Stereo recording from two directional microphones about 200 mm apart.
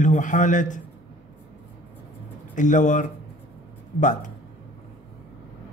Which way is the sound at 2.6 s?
40° left (ahead or behind).